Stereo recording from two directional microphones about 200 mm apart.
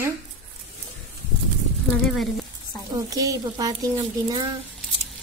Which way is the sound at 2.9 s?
15° right (ahead or behind).